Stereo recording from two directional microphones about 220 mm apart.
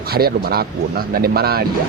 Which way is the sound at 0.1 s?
45° right (ahead or behind).